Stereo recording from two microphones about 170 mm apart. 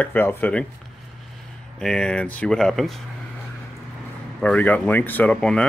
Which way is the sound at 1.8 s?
5° left (ahead or behind).